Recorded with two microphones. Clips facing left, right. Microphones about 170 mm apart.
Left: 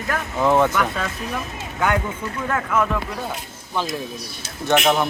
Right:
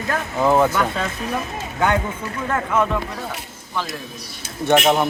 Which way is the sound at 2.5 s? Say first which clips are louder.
Right 1 dB; 15° right (ahead or behind).